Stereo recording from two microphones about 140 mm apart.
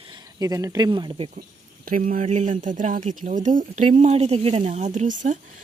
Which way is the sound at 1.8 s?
75° right (ahead or behind).